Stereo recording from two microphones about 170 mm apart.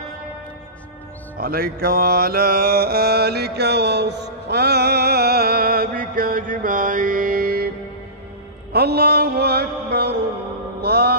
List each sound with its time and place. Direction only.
1.4 s music: 60° right (ahead or behind)
8.7 s mantra: 70° right (ahead or behind)